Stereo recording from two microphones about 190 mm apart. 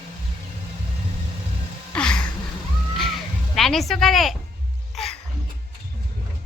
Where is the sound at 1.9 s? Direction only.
5° left (ahead or behind).